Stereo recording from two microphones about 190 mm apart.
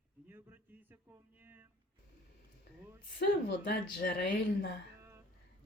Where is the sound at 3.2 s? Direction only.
60° left (ahead or behind).